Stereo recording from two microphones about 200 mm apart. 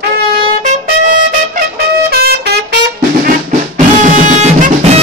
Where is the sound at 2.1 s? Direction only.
50° right (ahead or behind).